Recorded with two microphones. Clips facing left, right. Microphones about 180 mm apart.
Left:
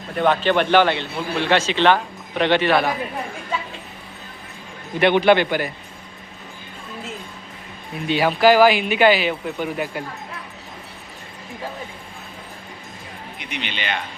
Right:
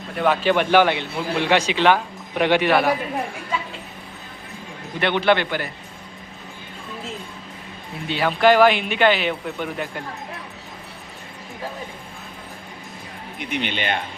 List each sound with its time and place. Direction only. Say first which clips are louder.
0.2 s a man's voice: left 1 dB; 5° right (ahead or behind)
4.9 s a man's voice: left 4 dB; 15° left (ahead or behind)
8.0 s a man's voice: left 4 dB; 15° left (ahead or behind)
8.3 s speech: left 1 dB; 5° left (ahead or behind)
13.4 s speech: right 5 dB; 50° right (ahead or behind)